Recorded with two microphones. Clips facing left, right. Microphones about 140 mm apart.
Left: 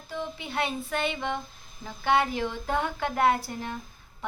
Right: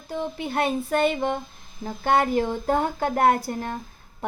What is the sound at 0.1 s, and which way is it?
A woman's voice, 50° right (ahead or behind).